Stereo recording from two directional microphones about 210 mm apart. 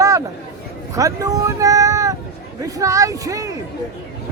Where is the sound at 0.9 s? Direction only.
15° right (ahead or behind).